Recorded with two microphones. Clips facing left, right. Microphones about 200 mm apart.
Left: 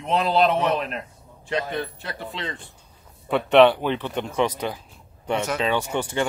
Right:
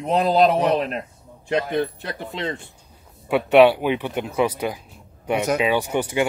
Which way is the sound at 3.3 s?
5° right (ahead or behind).